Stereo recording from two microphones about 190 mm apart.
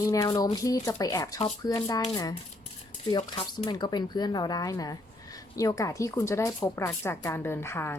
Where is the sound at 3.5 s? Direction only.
20° left (ahead or behind).